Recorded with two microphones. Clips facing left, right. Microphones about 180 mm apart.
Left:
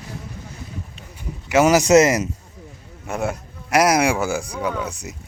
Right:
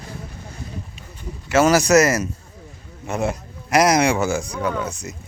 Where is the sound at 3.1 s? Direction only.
5° left (ahead or behind).